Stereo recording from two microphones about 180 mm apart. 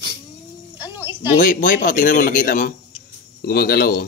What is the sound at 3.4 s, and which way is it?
Speech, 60° left (ahead or behind).